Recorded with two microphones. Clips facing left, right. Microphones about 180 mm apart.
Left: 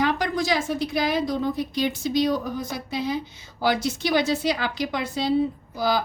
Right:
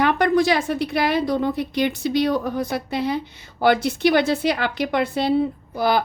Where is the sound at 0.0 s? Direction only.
60° right (ahead or behind).